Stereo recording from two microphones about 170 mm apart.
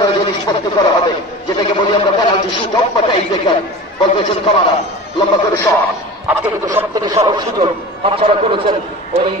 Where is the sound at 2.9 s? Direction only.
30° left (ahead or behind).